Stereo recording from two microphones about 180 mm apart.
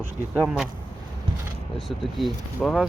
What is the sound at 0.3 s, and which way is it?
Speech, 5° right (ahead or behind).